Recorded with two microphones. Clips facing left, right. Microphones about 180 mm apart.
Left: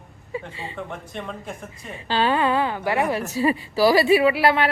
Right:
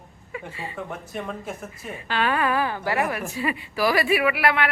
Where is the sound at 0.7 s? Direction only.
5° right (ahead or behind).